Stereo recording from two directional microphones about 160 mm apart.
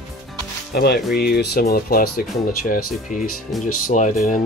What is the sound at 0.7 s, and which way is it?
Music, 90° left.